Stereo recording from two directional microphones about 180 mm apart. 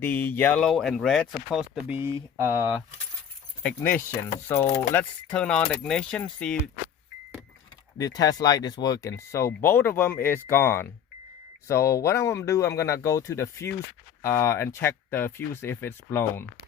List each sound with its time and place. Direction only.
0.0 s speech: 10° left (ahead or behind)
1.9 s speech: 15° right (ahead or behind)
3.6 s speech: 10° left (ahead or behind)
7.9 s speech: 20° left (ahead or behind)